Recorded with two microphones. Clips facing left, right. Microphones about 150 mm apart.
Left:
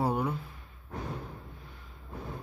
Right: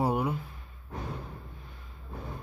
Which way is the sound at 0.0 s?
10° right (ahead or behind).